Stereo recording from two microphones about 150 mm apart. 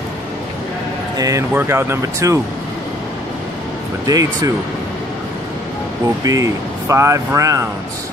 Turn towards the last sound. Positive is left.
turn(degrees=-20)  # may be behind; listen again after turning